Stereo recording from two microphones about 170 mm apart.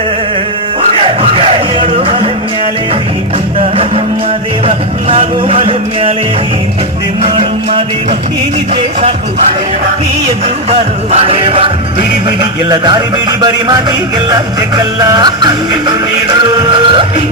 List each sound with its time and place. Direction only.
0.8 s music: 35° right (ahead or behind)
3.6 s music: 35° right (ahead or behind)
7.3 s music: 30° right (ahead or behind)
10.7 s music: 40° right (ahead or behind)
14.3 s music: 20° right (ahead or behind)